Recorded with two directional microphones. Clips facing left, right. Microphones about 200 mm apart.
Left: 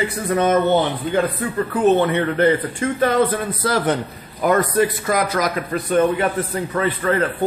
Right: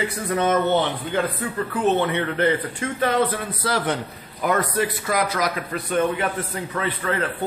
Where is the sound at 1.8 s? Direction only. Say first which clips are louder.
Left 5 dB; 45° left (ahead or behind).